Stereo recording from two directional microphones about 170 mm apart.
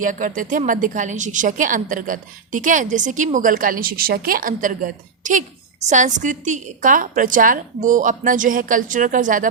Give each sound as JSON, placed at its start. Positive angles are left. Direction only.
{"t": 0.0, "sound": "a woman's voice", "side_deg": -50}